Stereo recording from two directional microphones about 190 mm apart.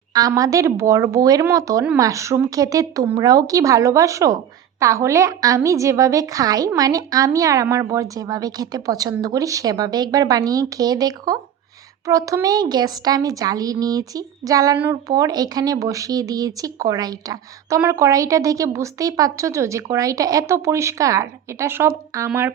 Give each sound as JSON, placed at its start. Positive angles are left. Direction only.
{"t": 0.1, "sound": "a woman's voice", "side_deg": -20}